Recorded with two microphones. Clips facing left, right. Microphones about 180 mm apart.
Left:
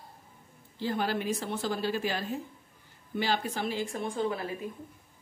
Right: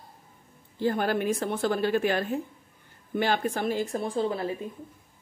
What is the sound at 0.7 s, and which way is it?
A woman's voice, 50° right (ahead or behind).